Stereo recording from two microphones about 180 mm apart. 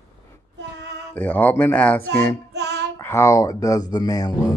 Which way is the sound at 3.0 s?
15° left (ahead or behind).